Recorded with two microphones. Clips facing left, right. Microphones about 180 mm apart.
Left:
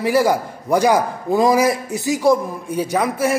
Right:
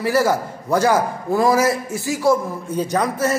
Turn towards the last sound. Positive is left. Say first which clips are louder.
# left 1 dB
turn(degrees=10)  # may be behind; listen again after turning